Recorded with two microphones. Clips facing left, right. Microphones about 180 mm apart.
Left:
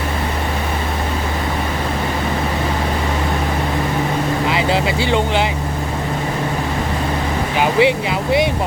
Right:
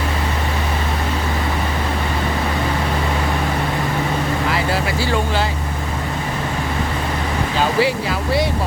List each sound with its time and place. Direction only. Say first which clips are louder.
4.4 s vehicle: left 3 dB; 20° left (ahead or behind)
7.6 s speech: left 4 dB; 20° left (ahead or behind)